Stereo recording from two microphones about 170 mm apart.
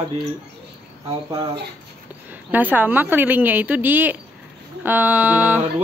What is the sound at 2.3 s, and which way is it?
Speech, 10° right (ahead or behind).